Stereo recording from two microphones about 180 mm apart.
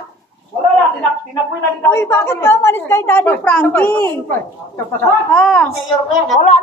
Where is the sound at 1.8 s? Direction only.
15° left (ahead or behind).